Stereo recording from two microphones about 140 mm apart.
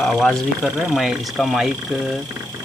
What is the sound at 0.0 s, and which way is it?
Speech, centre (ahead or behind).